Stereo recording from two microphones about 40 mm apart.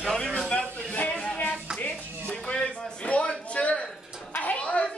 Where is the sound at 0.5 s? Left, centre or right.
Left.